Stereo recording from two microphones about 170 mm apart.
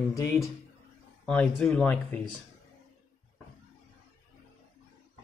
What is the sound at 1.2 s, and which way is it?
Speech, 5° left (ahead or behind).